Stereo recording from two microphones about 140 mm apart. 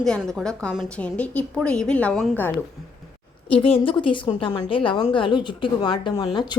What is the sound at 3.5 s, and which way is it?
A woman's voice, 40° left (ahead or behind).